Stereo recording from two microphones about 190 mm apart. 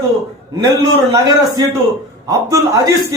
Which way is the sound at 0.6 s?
20° right (ahead or behind).